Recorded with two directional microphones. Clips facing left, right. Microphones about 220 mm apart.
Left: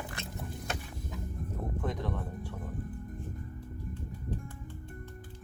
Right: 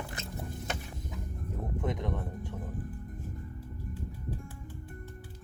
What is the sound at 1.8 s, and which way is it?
Speech, 20° right (ahead or behind).